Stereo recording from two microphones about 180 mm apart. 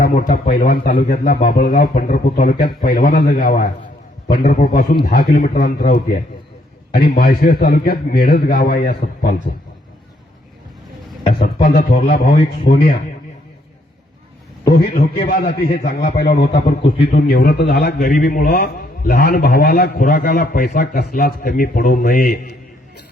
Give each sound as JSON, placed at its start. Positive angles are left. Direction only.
{"t": 0.0, "sound": "a man's voice", "side_deg": 55}
{"t": 11.6, "sound": "a man's voice", "side_deg": 55}
{"t": 14.8, "sound": "a man's voice", "side_deg": 55}
{"t": 16.6, "sound": "a man's voice", "side_deg": 30}
{"t": 17.2, "sound": "a man's voice", "side_deg": 60}